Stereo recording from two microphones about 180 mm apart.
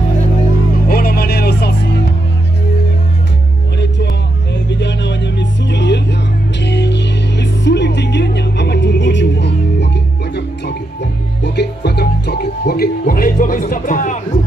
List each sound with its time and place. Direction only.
0.8 s music: 60° left (ahead or behind)
4.6 s music: 75° left (ahead or behind)
11.4 s music: 65° left (ahead or behind); by 14.4 s 45° left (ahead or behind)